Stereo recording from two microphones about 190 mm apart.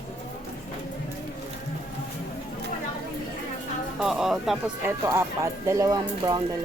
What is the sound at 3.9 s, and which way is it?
Music, centre (ahead or behind).